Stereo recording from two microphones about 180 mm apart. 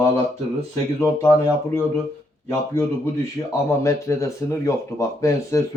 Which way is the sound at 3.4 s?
10° left (ahead or behind).